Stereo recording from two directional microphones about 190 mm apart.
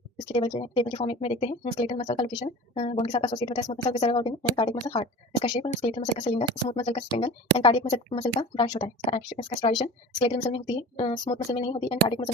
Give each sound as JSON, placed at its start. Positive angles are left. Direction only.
{"t": 0.3, "sound": "speech", "side_deg": 30}
{"t": 5.4, "sound": "speech", "side_deg": 35}